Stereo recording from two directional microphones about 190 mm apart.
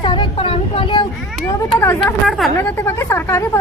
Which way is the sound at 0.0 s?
25° left (ahead or behind).